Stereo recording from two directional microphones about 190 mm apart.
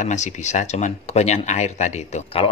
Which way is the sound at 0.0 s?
40° left (ahead or behind).